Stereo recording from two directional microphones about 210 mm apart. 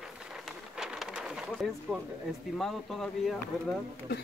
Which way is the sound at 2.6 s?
Centre (ahead or behind).